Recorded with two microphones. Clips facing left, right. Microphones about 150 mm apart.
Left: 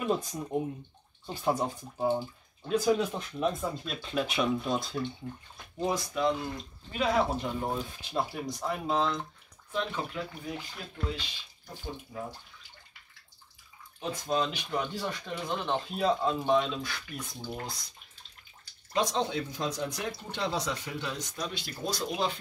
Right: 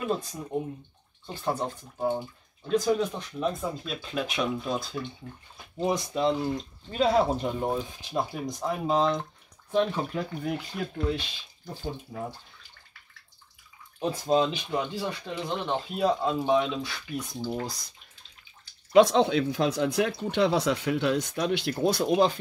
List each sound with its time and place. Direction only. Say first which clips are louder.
0.1 s speech: left 2 dB; 10° left (ahead or behind)
5.9 s speech: right 3 dB; 20° right (ahead or behind)
7.7 s speech: right 3 dB; 15° right (ahead or behind)
9.7 s speech: right 7 dB; 35° right (ahead or behind)
11.1 s speech: right 7 dB; 55° right (ahead or behind)
13.9 s speech: right 6 dB; 30° right (ahead or behind)
14.7 s speech: right 3 dB; 10° right (ahead or behind)
15.9 s speech: right 3 dB; 5° right (ahead or behind)
18.9 s speech: right 10 dB; 65° right (ahead or behind); by 22.4 s 50° right (ahead or behind)